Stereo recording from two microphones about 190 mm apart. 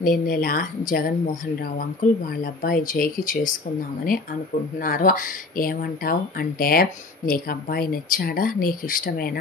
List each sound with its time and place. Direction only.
0.0 s speech: 50° left (ahead or behind)
4.7 s speech: 45° left (ahead or behind)